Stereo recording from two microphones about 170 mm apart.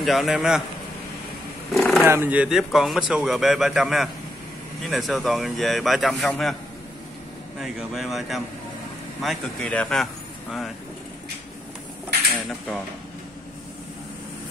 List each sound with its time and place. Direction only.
0.0 s a man's voice: centre (ahead or behind)
1.7 s a sound: centre (ahead or behind)
2.0 s a man's voice: 10° right (ahead or behind)
7.5 s a man's voice: centre (ahead or behind)
12.3 s dishes: centre (ahead or behind)